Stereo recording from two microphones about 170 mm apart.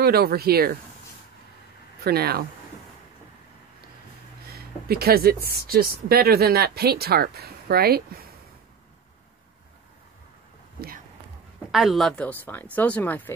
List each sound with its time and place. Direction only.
0.0 s speech: 65° right (ahead or behind)
2.0 s speech: 65° right (ahead or behind)
4.5 s speech: 65° right (ahead or behind)
11.7 s speech: centre (ahead or behind)